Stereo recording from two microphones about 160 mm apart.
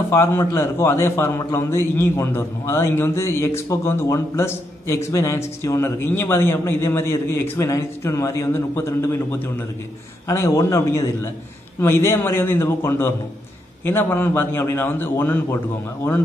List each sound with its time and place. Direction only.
0.1 s a man's voice: 15° left (ahead or behind)